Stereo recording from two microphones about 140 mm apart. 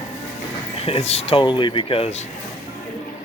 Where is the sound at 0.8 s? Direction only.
45° left (ahead or behind).